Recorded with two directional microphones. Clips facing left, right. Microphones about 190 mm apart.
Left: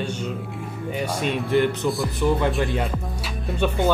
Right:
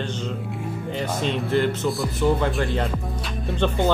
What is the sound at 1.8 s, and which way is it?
Speech, centre (ahead or behind).